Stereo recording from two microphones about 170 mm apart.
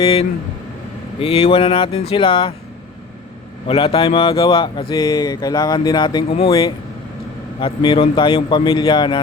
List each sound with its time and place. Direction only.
0.0 s speech: 35° left (ahead or behind)
3.7 s speech: 35° left (ahead or behind)